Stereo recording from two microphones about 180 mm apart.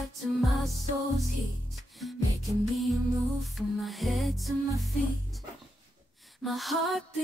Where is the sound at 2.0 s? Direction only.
Centre (ahead or behind).